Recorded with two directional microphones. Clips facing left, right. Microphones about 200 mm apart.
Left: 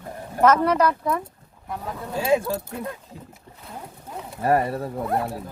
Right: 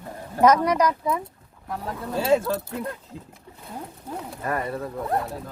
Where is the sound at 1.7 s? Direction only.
Centre (ahead or behind).